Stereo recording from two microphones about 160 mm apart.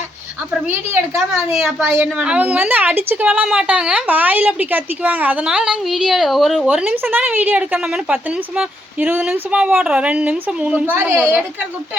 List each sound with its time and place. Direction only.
1.3 s a woman's voice: 5° right (ahead or behind)
1.8 s a woman's voice: 15° right (ahead or behind)